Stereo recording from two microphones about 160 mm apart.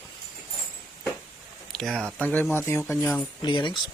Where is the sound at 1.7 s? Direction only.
Centre (ahead or behind).